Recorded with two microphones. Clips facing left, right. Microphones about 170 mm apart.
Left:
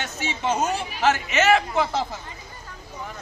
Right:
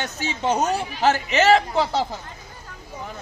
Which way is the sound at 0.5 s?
35° right (ahead or behind).